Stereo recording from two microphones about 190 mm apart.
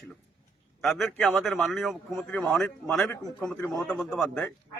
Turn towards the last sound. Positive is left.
turn(degrees=5)  # may be behind; listen again after turning